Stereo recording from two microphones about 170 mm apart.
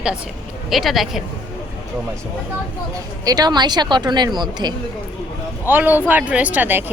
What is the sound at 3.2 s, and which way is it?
Speech, 20° right (ahead or behind).